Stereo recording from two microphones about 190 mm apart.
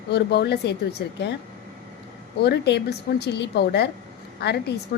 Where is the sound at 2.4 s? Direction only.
60° left (ahead or behind).